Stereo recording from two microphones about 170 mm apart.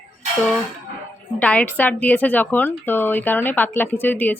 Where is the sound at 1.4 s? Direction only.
10° left (ahead or behind).